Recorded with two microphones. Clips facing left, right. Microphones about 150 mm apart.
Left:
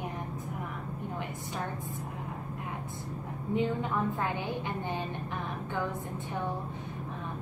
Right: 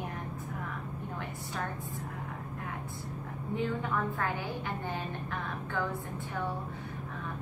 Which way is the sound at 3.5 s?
20° left (ahead or behind).